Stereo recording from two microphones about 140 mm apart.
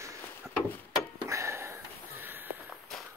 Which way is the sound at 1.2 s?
20° right (ahead or behind).